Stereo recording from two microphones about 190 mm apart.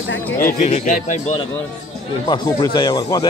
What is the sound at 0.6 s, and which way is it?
Speech, 40° left (ahead or behind).